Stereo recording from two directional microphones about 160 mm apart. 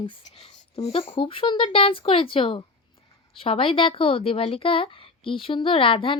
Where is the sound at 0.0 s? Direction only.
35° left (ahead or behind).